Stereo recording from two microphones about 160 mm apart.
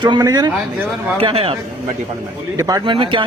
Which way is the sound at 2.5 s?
20° right (ahead or behind).